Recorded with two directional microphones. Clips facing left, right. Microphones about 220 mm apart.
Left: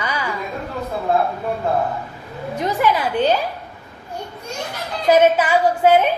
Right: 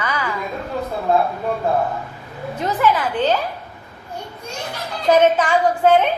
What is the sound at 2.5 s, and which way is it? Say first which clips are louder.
Speech: even; 15° left (ahead or behind).